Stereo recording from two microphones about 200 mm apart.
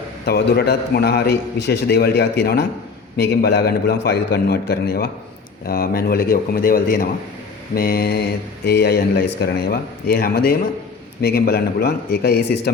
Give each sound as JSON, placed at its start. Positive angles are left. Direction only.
{"t": 0.3, "sound": "speech", "side_deg": 55}